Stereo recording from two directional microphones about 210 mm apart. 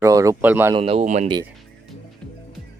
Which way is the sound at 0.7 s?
25° right (ahead or behind).